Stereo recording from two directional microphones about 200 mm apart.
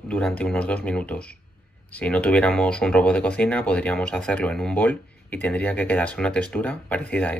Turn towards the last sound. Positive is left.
turn(degrees=5)  # may be behind; listen again after turning